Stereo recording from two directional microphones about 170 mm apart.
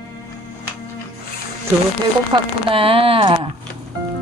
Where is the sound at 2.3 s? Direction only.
30° right (ahead or behind).